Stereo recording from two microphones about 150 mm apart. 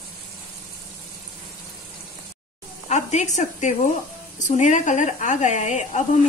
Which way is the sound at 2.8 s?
50° left (ahead or behind).